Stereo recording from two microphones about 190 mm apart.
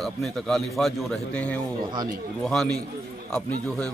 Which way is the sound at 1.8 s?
20° right (ahead or behind).